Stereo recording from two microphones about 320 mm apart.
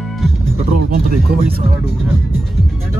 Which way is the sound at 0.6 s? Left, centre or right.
Right.